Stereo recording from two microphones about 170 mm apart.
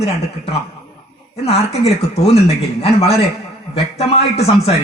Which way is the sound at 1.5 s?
35° left (ahead or behind).